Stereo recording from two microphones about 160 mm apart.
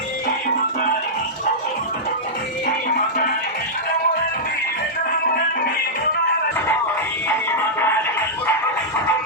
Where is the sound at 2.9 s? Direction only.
60° left (ahead or behind).